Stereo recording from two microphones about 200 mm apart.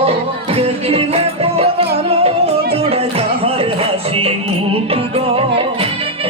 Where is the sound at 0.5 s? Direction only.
30° right (ahead or behind).